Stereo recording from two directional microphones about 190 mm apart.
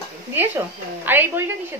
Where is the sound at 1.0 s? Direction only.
10° right (ahead or behind).